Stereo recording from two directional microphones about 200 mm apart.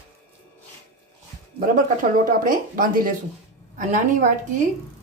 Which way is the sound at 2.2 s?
45° right (ahead or behind).